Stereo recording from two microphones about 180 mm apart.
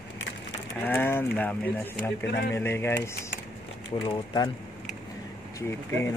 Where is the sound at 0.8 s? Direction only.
10° left (ahead or behind).